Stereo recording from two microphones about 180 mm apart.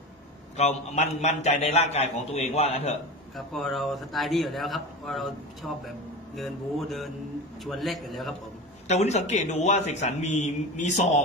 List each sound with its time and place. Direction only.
0.6 s a man's voice: 40° left (ahead or behind)
3.3 s a man's voice: centre (ahead or behind)
8.8 s a man's voice: 40° left (ahead or behind)